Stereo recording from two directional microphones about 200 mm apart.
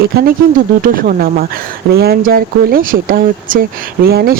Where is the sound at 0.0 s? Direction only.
50° right (ahead or behind).